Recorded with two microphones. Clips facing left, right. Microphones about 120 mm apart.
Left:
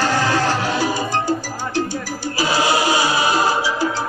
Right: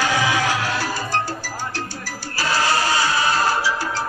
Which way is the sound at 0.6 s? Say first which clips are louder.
Left 4 dB; centre (ahead or behind).